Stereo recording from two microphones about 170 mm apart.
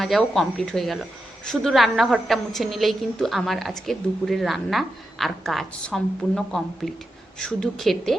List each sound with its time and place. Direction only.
0.0 s a woman's voice: centre (ahead or behind)